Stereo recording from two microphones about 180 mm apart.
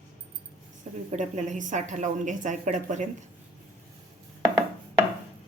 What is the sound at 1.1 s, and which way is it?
A woman's voice, 40° right (ahead or behind).